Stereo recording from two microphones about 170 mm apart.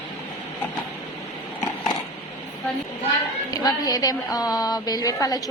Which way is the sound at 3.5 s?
20° left (ahead or behind).